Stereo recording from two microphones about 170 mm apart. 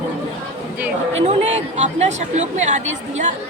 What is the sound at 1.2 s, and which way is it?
A woman's voice, 40° right (ahead or behind).